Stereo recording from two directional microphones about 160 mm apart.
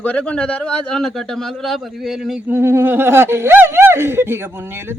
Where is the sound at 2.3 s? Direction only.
15° right (ahead or behind).